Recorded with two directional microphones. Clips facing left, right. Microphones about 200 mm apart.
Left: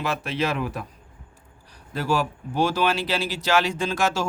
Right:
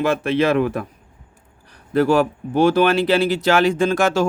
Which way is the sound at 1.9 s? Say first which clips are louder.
Right 9 dB; 60° right (ahead or behind).